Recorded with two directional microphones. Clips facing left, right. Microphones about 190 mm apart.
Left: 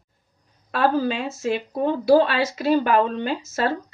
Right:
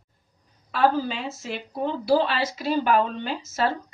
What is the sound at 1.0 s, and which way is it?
Speech, 50° left (ahead or behind).